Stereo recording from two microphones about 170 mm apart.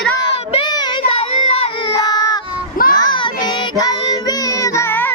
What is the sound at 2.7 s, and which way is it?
Children playing, 55° left (ahead or behind).